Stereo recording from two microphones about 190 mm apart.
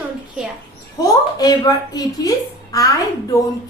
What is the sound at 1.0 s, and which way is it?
A woman's voice, 20° left (ahead or behind).